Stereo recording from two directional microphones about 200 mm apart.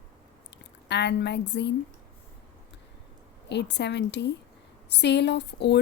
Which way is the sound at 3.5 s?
60° left (ahead or behind).